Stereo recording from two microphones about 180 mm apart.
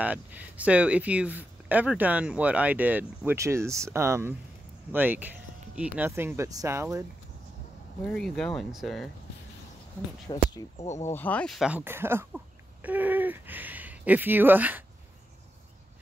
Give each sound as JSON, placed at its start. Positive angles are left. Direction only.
{"t": 0.0, "sound": "speech", "side_deg": -10}
{"t": 8.0, "sound": "speech", "side_deg": 0}
{"t": 10.3, "sound": "speech", "side_deg": 25}
{"t": 10.8, "sound": "speech", "side_deg": 40}
{"t": 11.1, "sound": "speech", "side_deg": 10}